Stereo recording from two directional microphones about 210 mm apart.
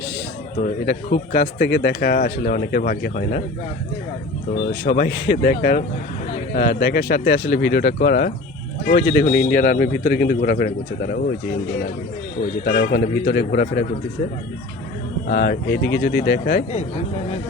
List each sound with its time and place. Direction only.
0.6 s speech: 45° left (ahead or behind)
4.5 s speech: 50° left (ahead or behind)
12.6 s speech: 45° left (ahead or behind)
15.3 s speech: 50° left (ahead or behind)